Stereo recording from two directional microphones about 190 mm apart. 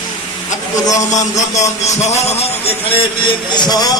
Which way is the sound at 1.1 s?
40° left (ahead or behind).